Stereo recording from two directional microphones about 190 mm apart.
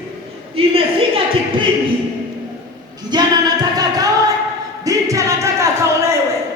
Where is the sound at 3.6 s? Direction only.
20° right (ahead or behind).